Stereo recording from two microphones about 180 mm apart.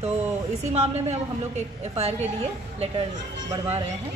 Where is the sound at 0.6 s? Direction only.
40° right (ahead or behind).